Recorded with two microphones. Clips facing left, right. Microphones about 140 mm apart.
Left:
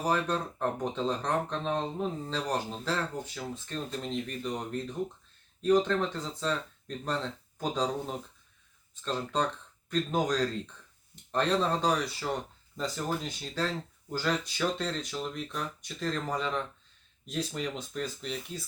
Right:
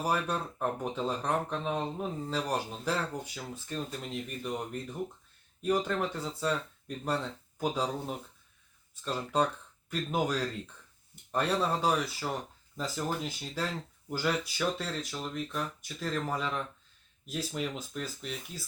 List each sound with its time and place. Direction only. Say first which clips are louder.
0.0 s speech: left 2 dB; 10° right (ahead or behind)
5.6 s speech: left 4 dB; 10° right (ahead or behind)